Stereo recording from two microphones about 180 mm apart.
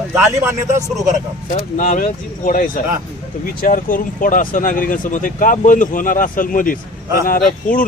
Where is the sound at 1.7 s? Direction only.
50° left (ahead or behind).